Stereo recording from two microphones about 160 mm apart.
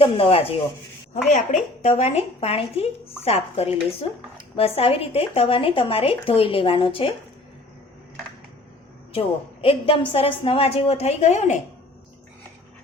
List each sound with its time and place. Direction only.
0.0 s a woman's voice: 35° left (ahead or behind)
1.1 s a woman's voice: 50° left (ahead or behind); by 7.1 s 35° left (ahead or behind)
9.1 s a woman's voice: 35° left (ahead or behind)